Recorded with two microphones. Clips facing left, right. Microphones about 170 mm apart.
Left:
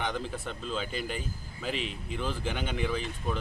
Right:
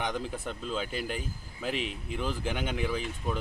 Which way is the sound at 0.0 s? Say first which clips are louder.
Even; 15° right (ahead or behind).